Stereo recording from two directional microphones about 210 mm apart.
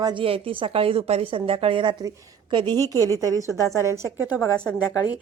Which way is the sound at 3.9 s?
15° right (ahead or behind).